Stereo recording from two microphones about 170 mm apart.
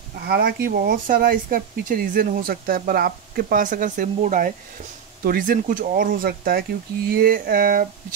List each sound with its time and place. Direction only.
0.3 s speech: 65° right (ahead or behind)